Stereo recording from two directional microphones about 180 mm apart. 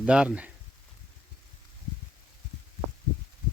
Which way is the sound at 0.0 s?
5° right (ahead or behind).